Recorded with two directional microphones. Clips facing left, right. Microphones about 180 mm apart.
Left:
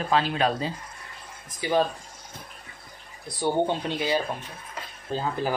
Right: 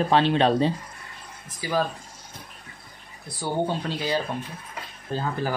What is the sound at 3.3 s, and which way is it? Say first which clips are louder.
Speech: left 2 dB; 20° left (ahead or behind).